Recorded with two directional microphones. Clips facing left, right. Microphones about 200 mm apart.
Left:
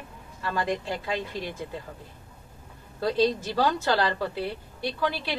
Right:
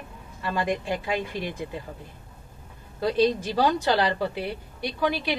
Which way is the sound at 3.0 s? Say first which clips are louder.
Right 2 dB; 15° right (ahead or behind).